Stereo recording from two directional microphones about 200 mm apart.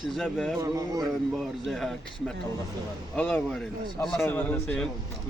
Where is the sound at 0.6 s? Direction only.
15° right (ahead or behind).